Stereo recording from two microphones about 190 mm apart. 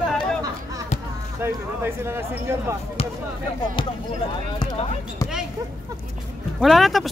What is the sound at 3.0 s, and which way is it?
Speech, 30° left (ahead or behind).